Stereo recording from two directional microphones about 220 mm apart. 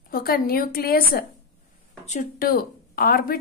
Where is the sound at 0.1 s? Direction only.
40° left (ahead or behind).